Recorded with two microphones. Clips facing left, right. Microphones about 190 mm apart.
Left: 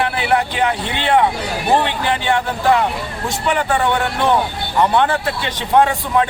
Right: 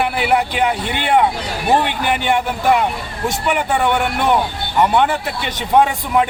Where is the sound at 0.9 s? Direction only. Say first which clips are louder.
Left 1 dB; 10° right (ahead or behind).